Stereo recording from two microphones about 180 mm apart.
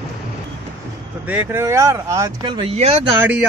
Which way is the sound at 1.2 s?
10° right (ahead or behind).